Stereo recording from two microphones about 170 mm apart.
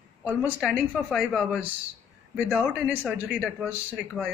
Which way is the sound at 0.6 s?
5° right (ahead or behind).